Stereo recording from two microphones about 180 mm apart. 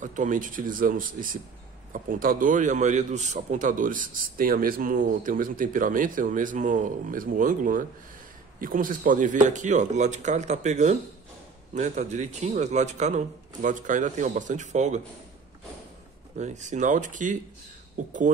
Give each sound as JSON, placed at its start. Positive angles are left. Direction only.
{"t": 0.0, "sound": "a man's voice", "side_deg": -45}
{"t": 16.3, "sound": "a man's voice", "side_deg": -40}